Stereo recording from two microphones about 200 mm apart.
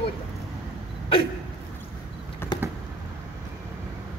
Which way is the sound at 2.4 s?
10° left (ahead or behind).